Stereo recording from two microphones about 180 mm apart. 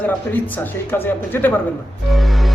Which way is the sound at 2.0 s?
Centre (ahead or behind).